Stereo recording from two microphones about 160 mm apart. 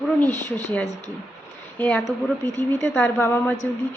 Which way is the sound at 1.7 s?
10° left (ahead or behind).